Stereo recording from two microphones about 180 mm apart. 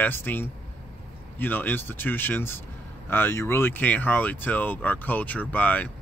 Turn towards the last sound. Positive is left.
turn(degrees=10)  # may be behind; listen again after turning